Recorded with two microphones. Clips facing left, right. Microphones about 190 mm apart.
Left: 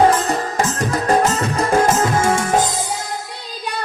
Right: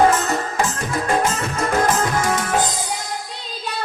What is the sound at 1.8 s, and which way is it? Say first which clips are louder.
Music: left 3 dB; 25° left (ahead or behind).